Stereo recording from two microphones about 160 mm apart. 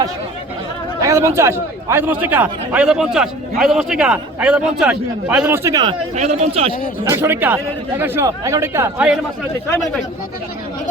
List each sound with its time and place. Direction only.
1.0 s a man's voice: 20° right (ahead or behind)
6.1 s speech: 45° right (ahead or behind)
7.0 s a man's voice: 15° right (ahead or behind)